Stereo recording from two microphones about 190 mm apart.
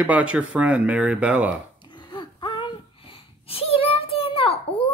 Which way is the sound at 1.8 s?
25° left (ahead or behind).